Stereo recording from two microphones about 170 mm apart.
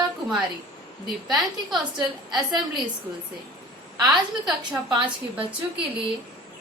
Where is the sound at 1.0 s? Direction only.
5° right (ahead or behind).